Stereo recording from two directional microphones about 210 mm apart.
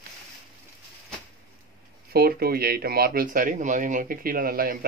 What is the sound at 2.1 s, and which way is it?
Speech, 45° right (ahead or behind).